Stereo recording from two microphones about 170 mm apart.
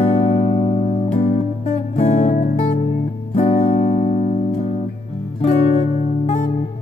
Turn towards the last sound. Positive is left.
turn(degrees=40)  # may be behind; listen again after turning